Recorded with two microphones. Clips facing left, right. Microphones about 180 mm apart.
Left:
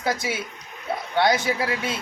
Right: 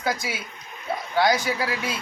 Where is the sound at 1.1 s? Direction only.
25° left (ahead or behind).